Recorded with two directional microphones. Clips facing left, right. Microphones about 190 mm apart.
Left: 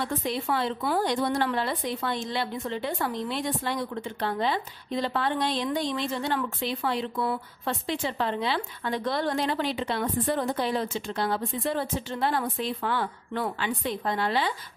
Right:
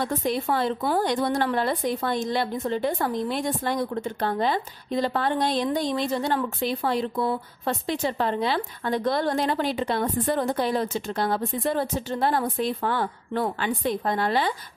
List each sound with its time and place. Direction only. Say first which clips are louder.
0.0 s a woman's voice: right 4 dB; 45° right (ahead or behind)